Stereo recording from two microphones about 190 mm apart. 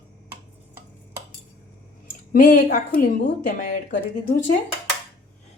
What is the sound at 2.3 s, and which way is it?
A woman's voice, 50° left (ahead or behind).